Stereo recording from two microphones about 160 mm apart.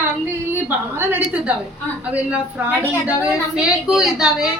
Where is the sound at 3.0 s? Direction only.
5° right (ahead or behind).